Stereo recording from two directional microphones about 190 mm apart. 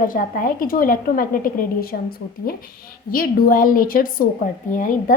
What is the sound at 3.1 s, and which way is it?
A woman's voice, 50° left (ahead or behind).